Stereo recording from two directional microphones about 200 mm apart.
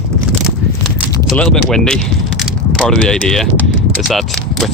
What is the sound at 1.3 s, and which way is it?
Speech, 5° left (ahead or behind).